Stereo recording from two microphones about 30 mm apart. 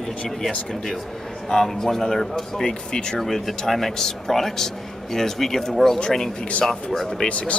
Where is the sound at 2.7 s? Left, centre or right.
Left.